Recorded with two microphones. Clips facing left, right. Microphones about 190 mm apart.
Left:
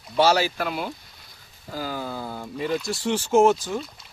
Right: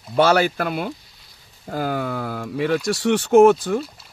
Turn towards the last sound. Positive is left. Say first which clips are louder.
# right 6 dB
turn(degrees=-55)  # may be behind; listen again after turning